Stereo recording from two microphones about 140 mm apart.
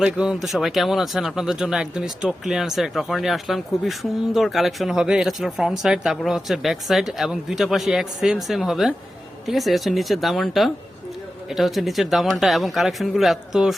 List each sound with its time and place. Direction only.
0.0 s speech: 5° right (ahead or behind)